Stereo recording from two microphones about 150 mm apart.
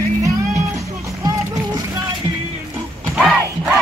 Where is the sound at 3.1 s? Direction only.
Centre (ahead or behind).